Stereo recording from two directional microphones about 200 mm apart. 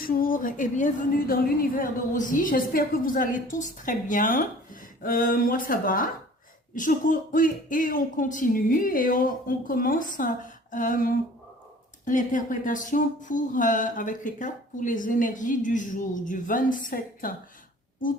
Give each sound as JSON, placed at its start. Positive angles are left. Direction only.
{"t": 0.0, "sound": "a woman's voice", "side_deg": 45}